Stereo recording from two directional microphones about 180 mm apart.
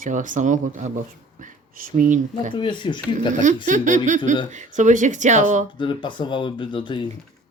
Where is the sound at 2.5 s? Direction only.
25° left (ahead or behind).